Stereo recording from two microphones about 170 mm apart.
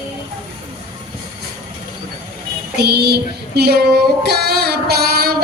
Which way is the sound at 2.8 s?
70° right (ahead or behind).